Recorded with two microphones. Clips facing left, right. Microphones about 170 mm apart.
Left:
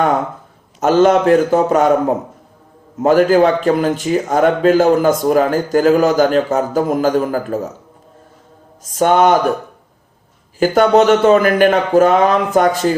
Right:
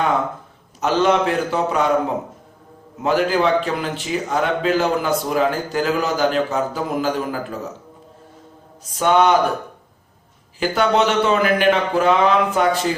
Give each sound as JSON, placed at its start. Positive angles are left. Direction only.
{"t": 0.8, "sound": "speech", "side_deg": 45}
{"t": 9.0, "sound": "speech", "side_deg": 45}
{"t": 10.6, "sound": "speech", "side_deg": 45}